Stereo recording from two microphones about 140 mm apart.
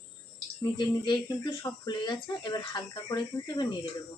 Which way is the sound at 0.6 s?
30° left (ahead or behind).